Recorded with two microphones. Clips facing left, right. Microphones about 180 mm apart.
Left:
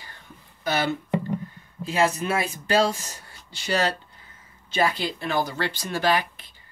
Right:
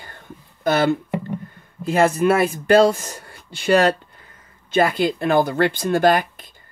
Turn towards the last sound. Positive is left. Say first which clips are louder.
# right 7 dB
turn(degrees=-50)  # may be behind; listen again after turning